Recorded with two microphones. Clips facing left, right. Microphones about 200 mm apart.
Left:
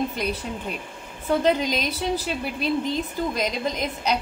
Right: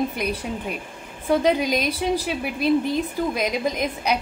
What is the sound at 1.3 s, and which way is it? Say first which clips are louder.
A woman's voice: right 2 dB; 10° right (ahead or behind).